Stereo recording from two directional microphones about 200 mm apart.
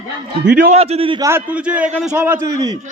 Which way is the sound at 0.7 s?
30° right (ahead or behind).